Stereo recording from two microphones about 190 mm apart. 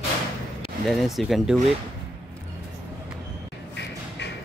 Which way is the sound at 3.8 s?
65° left (ahead or behind).